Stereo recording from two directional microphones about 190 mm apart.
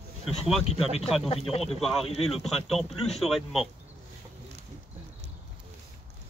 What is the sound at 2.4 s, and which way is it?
Speech, centre (ahead or behind).